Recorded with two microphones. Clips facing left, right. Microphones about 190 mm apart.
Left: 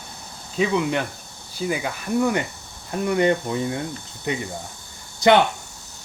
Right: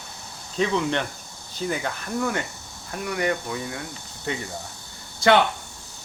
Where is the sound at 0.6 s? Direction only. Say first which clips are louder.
Left 2 dB; 10° left (ahead or behind); by 3.8 s 25° left (ahead or behind).